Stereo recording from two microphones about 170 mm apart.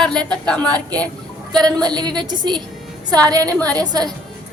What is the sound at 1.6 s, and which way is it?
A woman's voice, 25° right (ahead or behind).